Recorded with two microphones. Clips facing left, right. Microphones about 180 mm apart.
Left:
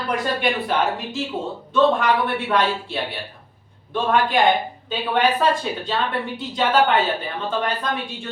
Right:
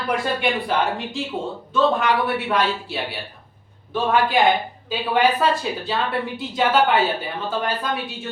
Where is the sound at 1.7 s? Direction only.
5° right (ahead or behind).